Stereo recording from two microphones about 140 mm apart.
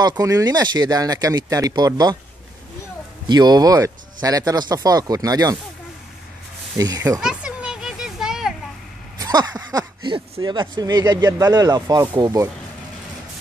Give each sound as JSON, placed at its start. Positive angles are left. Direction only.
{"t": 0.0, "sound": "speech", "side_deg": -25}
{"t": 3.3, "sound": "speech", "side_deg": -30}
{"t": 6.8, "sound": "speech", "side_deg": -25}
{"t": 7.2, "sound": "children playing", "side_deg": -5}
{"t": 9.2, "sound": "speech", "side_deg": -30}